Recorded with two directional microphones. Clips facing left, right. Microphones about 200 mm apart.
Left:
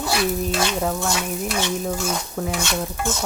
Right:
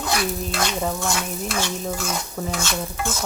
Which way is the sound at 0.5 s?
Centre (ahead or behind).